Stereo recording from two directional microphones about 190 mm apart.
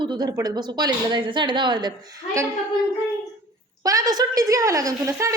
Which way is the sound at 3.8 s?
20° right (ahead or behind).